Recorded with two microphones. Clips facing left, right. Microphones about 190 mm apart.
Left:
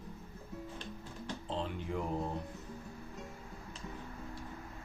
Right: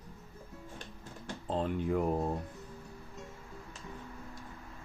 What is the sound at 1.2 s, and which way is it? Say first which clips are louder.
Music: right 5 dB; 50° right (ahead or behind).